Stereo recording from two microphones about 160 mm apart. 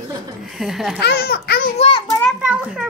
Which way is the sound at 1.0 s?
80° left.